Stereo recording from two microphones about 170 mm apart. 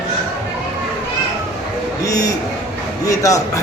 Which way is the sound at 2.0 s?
20° left (ahead or behind).